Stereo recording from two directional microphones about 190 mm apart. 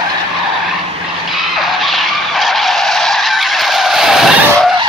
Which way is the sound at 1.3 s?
Centre (ahead or behind).